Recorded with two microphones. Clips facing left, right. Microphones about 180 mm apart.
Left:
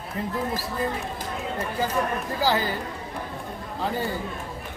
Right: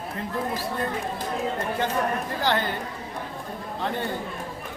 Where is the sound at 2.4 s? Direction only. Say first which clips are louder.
Left 2 dB; 5° left (ahead or behind).